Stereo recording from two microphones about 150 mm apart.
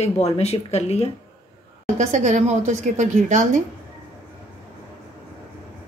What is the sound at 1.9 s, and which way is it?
A woman's voice, 50° right (ahead or behind).